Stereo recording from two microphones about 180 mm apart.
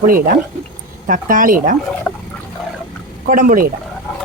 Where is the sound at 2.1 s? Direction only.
5° left (ahead or behind).